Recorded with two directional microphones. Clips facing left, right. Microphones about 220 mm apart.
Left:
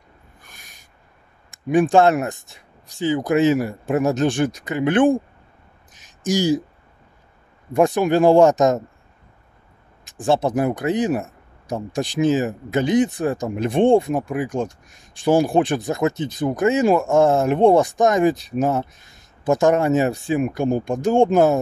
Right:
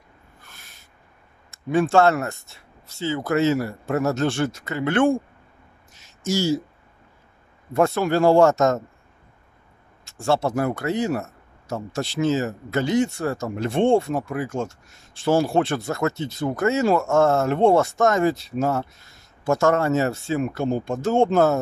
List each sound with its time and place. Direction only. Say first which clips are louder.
0.4 s owl: left 1 dB; 15° left (ahead or behind)
1.5 s speech: left 3 dB; 15° left (ahead or behind)
5.9 s a sound: left 3 dB; 15° left (ahead or behind)
7.7 s speech: left 3 dB; 15° left (ahead or behind)
10.0 s speech: left 3 dB; 15° left (ahead or behind)